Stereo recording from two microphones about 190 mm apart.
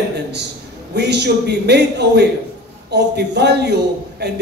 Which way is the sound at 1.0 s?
60° right (ahead or behind).